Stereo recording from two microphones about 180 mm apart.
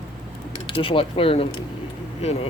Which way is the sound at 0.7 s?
30° left (ahead or behind).